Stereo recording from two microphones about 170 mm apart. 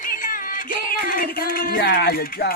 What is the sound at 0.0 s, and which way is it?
Music, 55° left (ahead or behind).